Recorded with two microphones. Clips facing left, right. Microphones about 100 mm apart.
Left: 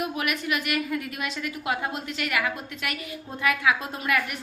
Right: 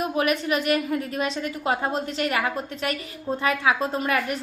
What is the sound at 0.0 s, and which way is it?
A woman's voice, 35° right (ahead or behind).